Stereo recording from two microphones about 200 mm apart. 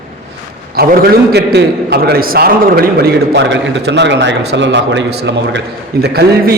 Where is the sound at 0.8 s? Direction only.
50° right (ahead or behind).